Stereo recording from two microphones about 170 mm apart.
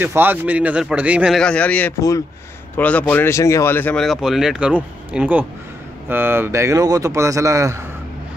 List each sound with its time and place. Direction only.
0.0 s a man's voice: 10° right (ahead or behind); by 2.0 s 10° left (ahead or behind)
2.0 s speech: 20° left (ahead or behind)
2.8 s a man's voice: 10° left (ahead or behind); by 7.8 s 20° right (ahead or behind)